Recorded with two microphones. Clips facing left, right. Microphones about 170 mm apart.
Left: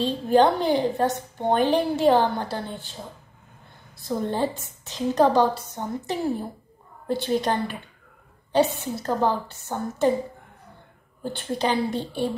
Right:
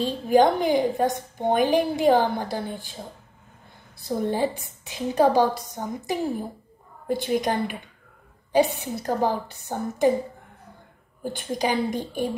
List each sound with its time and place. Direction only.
0.0 s a woman's voice: 10° right (ahead or behind)
4.2 s a woman's voice: 15° right (ahead or behind)
11.3 s a woman's voice: 15° right (ahead or behind)